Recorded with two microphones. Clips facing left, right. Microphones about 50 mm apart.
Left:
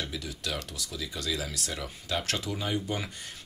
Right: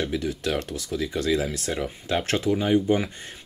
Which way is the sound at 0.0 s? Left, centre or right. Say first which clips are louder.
Right 9 dB; right.